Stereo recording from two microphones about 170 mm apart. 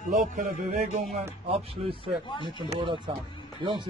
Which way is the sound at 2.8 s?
30° right (ahead or behind).